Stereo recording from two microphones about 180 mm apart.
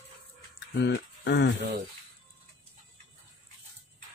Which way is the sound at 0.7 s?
75° left (ahead or behind).